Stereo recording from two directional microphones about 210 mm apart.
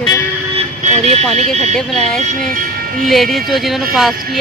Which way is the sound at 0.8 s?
30° right (ahead or behind).